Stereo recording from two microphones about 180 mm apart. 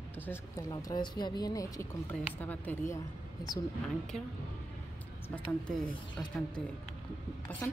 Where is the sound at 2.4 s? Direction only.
10° left (ahead or behind).